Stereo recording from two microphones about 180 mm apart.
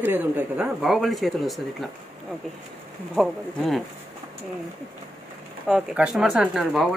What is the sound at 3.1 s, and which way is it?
Speech, centre (ahead or behind).